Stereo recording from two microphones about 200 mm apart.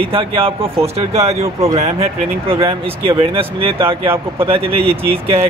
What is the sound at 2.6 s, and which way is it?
Speech, 25° right (ahead or behind).